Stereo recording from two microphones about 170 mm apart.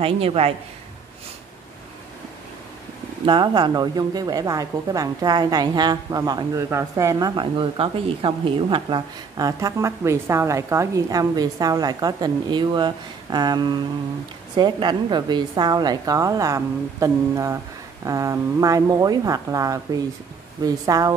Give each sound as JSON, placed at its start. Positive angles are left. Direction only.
{"t": 0.0, "sound": "a man's voice", "side_deg": -35}
{"t": 3.3, "sound": "a woman's voice", "side_deg": -25}